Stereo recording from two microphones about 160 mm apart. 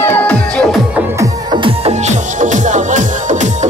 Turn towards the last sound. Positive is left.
turn(degrees=-50)  # may be behind; listen again after turning